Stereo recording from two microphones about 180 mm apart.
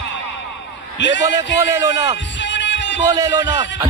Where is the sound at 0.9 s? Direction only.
80° left.